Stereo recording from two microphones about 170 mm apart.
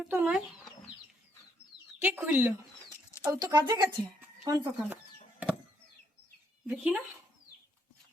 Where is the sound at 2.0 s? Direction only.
10° right (ahead or behind).